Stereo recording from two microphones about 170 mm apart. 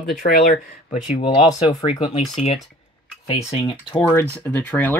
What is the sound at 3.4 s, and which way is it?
Speech, 30° left (ahead or behind).